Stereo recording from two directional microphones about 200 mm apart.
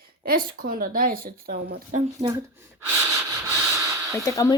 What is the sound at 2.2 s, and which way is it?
Speech, 35° right (ahead or behind).